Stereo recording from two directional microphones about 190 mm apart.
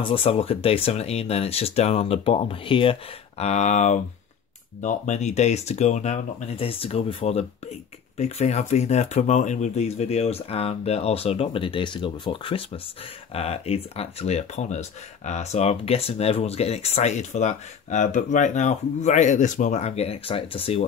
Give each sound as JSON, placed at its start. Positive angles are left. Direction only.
{"t": 0.0, "sound": "speech", "side_deg": 30}